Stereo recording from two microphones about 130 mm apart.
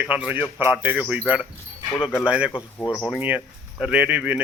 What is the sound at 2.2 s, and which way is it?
Speech, 10° right (ahead or behind).